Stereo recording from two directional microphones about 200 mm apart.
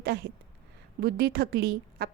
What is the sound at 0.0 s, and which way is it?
A woman's voice, 50° right (ahead or behind).